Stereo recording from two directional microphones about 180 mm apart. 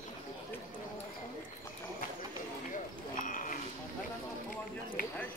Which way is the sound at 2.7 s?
45° left (ahead or behind).